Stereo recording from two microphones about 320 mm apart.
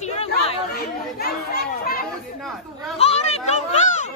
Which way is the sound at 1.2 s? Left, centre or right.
Left.